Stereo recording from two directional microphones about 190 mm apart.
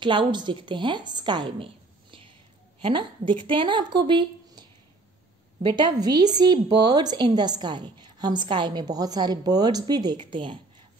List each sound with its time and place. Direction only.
0.0 s a woman's voice: 25° right (ahead or behind)